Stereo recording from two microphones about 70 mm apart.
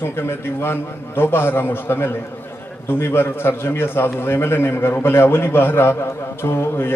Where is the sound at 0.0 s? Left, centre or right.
Left.